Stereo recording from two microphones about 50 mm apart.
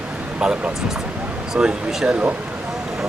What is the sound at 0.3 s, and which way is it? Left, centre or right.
Speech, right.